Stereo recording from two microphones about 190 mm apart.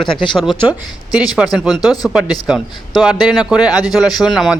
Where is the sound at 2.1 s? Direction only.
5° right (ahead or behind).